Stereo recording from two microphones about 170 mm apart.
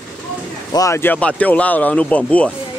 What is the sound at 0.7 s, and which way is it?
Speech, 15° left (ahead or behind).